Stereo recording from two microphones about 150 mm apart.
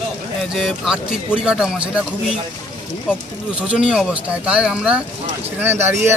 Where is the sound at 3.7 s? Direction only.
5° right (ahead or behind).